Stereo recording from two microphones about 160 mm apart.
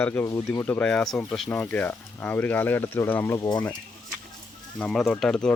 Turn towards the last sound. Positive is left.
turn(degrees=5)  # may be behind; listen again after turning